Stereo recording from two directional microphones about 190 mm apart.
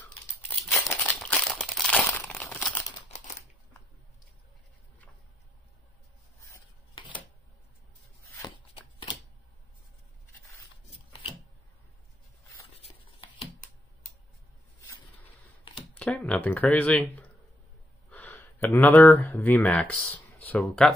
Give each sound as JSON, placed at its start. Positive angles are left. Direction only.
{"t": 0.8, "sound": "crumpling", "side_deg": 10}
{"t": 7.0, "sound": "a sound", "side_deg": 25}
{"t": 12.7, "sound": "writing", "side_deg": 30}
{"t": 15.7, "sound": "camera", "side_deg": 25}
{"t": 16.0, "sound": "speech", "side_deg": 5}